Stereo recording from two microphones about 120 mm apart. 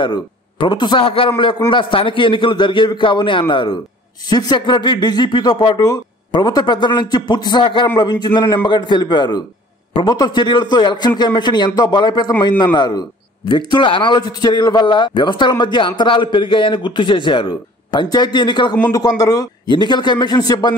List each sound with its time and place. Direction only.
0.0 s a man's voice: 40° left (ahead or behind)